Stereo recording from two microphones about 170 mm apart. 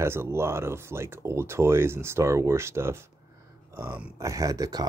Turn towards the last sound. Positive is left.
turn(degrees=-20)  # may be behind; listen again after turning